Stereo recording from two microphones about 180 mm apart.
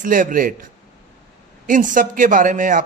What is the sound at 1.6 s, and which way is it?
A man's voice, 45° right (ahead or behind).